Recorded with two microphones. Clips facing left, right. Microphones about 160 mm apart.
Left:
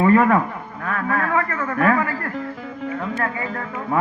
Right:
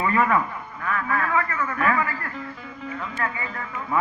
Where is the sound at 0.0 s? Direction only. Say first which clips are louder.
Left 6 dB; 50° left (ahead or behind).